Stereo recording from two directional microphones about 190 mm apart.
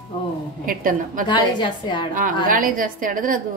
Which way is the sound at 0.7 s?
45° right (ahead or behind).